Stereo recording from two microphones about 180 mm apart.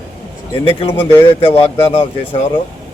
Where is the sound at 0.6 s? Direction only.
30° left (ahead or behind).